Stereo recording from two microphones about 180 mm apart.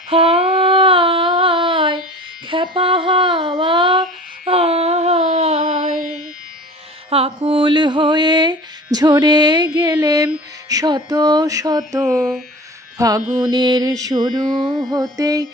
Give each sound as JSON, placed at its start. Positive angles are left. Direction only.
{"t": 0.1, "sound": "humming", "side_deg": -30}
{"t": 2.5, "sound": "a sound", "side_deg": -30}
{"t": 7.1, "sound": "mantra", "side_deg": -30}
{"t": 12.0, "sound": "speech", "side_deg": 0}
{"t": 13.0, "sound": "mantra", "side_deg": -20}
{"t": 14.6, "sound": "speech", "side_deg": 0}
{"t": 15.1, "sound": "mantra", "side_deg": -20}